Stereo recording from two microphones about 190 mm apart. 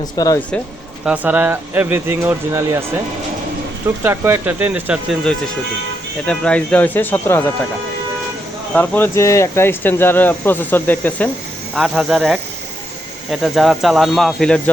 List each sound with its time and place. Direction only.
0.0 s speech: 20° left (ahead or behind)
1.0 s speech: 10° right (ahead or behind)
4.0 s speech: 15° right (ahead or behind)
6.2 s speech: 5° left (ahead or behind)
8.7 s speech: 10° left (ahead or behind)
11.7 s speech: 5° right (ahead or behind)